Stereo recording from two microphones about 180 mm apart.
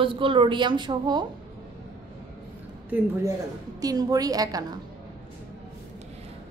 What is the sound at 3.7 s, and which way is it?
Speech, 20° right (ahead or behind).